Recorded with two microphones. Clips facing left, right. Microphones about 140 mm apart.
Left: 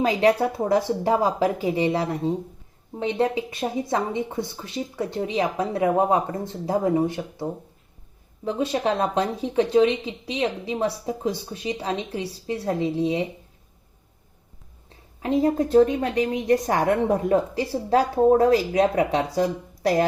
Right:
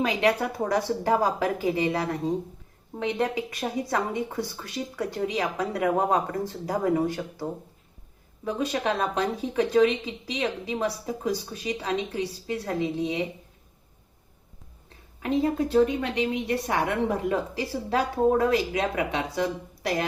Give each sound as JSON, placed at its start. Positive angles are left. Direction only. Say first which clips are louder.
{"t": 0.0, "sound": "speech", "louder": "left 4 dB", "side_deg": 35}
{"t": 1.6, "sound": "a woman's voice", "louder": "left 3 dB", "side_deg": 30}
{"t": 8.4, "sound": "speech", "louder": "left 3 dB", "side_deg": 30}
{"t": 15.2, "sound": "a woman's voice", "louder": "left 3 dB", "side_deg": 35}